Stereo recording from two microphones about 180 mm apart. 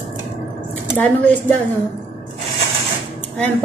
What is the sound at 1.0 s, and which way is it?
Speech, 10° left (ahead or behind).